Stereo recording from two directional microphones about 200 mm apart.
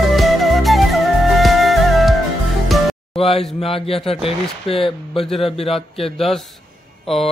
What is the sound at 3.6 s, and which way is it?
Speech, 30° left (ahead or behind).